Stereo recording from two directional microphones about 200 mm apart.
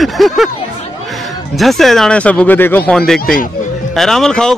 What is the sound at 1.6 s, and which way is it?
Speech, centre (ahead or behind).